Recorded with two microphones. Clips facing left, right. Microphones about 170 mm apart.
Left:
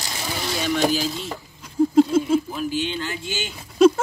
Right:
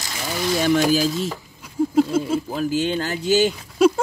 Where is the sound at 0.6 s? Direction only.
45° right (ahead or behind).